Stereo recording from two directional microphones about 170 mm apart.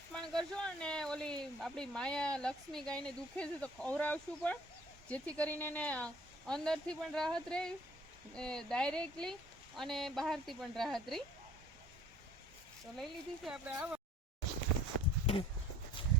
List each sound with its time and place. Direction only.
0.1 s speech: 5° left (ahead or behind)
13.0 s speech: 5° right (ahead or behind)
16.0 s a sound: 30° left (ahead or behind)